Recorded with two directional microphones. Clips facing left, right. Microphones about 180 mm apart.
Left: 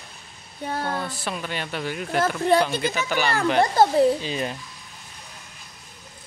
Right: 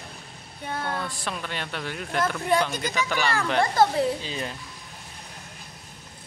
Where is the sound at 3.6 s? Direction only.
25° left (ahead or behind).